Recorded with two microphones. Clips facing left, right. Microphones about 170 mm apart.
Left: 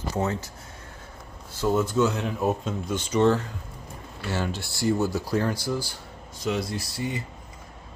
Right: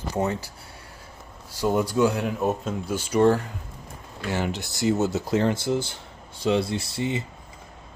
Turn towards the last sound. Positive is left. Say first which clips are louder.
# right 3 dB
turn(degrees=-25)  # may be behind; listen again after turning